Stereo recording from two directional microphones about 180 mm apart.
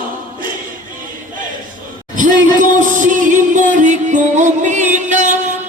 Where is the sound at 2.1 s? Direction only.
45° right (ahead or behind).